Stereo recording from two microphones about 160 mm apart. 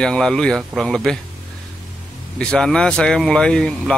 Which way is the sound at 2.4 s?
5° left (ahead or behind).